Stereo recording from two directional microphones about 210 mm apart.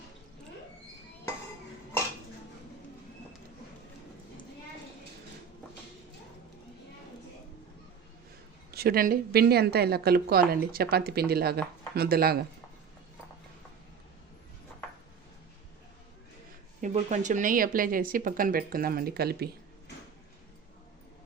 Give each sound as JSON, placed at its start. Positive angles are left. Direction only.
{"t": 8.7, "sound": "speech", "side_deg": -45}
{"t": 16.8, "sound": "speech", "side_deg": -35}